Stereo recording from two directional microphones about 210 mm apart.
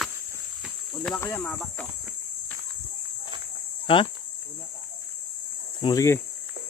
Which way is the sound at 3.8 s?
25° left (ahead or behind).